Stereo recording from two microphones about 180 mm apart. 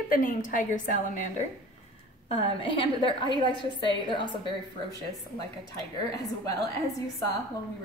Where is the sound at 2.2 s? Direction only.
30° left (ahead or behind).